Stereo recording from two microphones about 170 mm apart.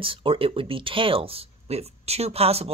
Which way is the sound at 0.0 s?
30° right (ahead or behind).